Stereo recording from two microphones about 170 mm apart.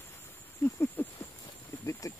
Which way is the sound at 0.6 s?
10° left (ahead or behind).